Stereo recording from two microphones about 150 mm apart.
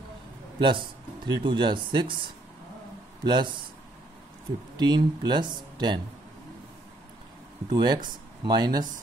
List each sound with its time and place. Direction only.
0.6 s speech: 30° right (ahead or behind)
3.3 s speech: 30° right (ahead or behind)
4.7 s speech: 30° right (ahead or behind)
7.7 s speech: 30° right (ahead or behind)